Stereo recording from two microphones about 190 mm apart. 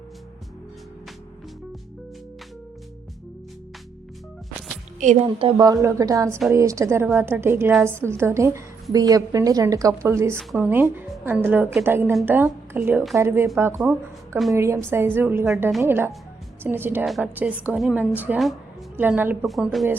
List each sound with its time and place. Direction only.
4.9 s a woman's voice: 35° right (ahead or behind); by 19.8 s centre (ahead or behind)